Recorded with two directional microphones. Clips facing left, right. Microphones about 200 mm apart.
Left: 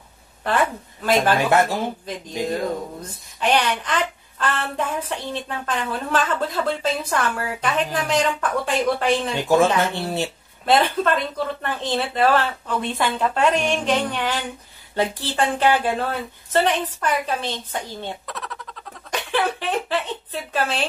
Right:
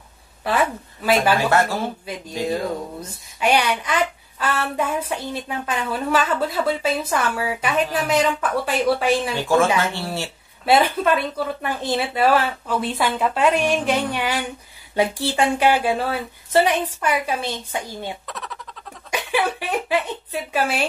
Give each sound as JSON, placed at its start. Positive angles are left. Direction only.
{"t": 0.4, "sound": "a woman's voice", "side_deg": -5}
{"t": 1.5, "sound": "speech", "side_deg": 15}
{"t": 2.1, "sound": "a woman's voice", "side_deg": -10}
{"t": 9.4, "sound": "speech", "side_deg": 20}
{"t": 10.6, "sound": "a woman's voice", "side_deg": -10}
{"t": 18.3, "sound": "a sound", "side_deg": 0}
{"t": 19.0, "sound": "speech", "side_deg": -10}